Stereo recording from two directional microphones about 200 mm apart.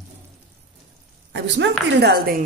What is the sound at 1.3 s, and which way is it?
A woman's voice, 60° right (ahead or behind).